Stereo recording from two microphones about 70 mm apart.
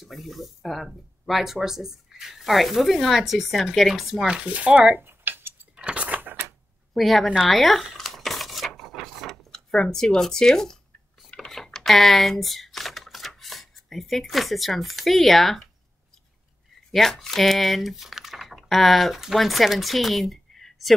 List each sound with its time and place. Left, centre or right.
0.0 s speech: centre
5.0 s tick-tock: right
5.8 s keys jangling: centre
6.9 s speech: centre
7.4 s a sound: centre
11.2 s typing: centre
16.9 s speech: centre